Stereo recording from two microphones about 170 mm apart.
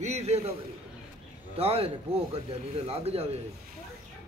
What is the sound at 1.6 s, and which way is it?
Speech, 35° right (ahead or behind).